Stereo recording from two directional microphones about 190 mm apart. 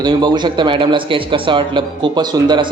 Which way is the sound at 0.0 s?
25° right (ahead or behind).